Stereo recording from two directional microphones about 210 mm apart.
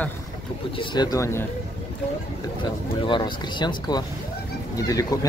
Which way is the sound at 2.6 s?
25° left (ahead or behind).